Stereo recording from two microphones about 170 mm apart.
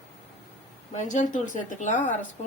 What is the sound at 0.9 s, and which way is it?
Speech, 45° left (ahead or behind).